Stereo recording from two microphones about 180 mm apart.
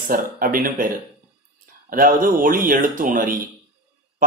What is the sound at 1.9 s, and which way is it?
A man's voice, 50° right (ahead or behind).